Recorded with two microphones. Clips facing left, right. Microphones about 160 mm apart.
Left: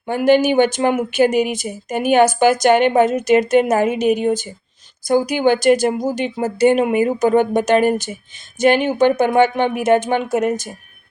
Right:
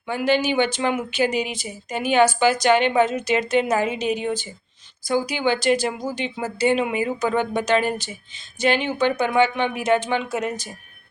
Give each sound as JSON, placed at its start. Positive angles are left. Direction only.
{"t": 0.1, "sound": "speech", "side_deg": 50}